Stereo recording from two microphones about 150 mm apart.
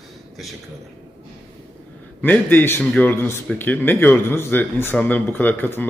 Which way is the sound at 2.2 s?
10° left (ahead or behind).